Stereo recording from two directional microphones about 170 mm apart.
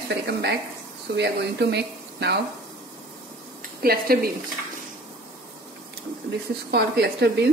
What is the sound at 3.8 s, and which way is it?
Speech, 60° right (ahead or behind).